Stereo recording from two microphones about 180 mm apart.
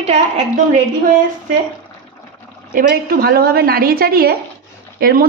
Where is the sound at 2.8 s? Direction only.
55° right (ahead or behind).